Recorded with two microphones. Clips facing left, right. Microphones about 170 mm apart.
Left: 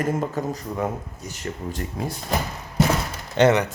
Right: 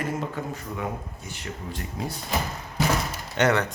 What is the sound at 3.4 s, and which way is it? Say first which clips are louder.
Speech: left 5 dB; 30° left (ahead or behind).